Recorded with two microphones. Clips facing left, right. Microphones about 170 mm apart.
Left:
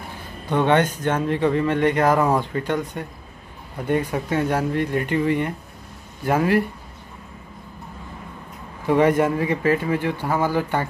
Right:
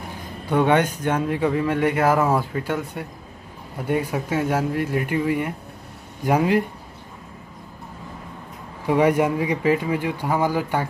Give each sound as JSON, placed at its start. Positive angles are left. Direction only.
{"t": 0.5, "sound": "speech", "side_deg": -10}
{"t": 8.8, "sound": "speech", "side_deg": -10}